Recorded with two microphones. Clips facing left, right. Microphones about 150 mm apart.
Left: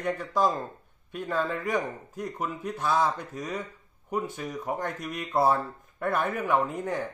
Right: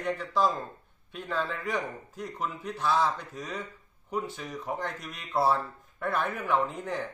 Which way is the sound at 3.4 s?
15° left (ahead or behind).